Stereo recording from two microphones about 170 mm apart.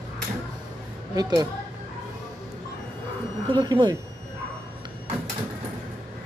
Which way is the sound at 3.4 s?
25° right (ahead or behind).